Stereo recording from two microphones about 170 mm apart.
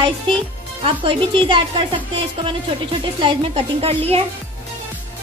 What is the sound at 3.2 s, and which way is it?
A woman's voice, 35° right (ahead or behind).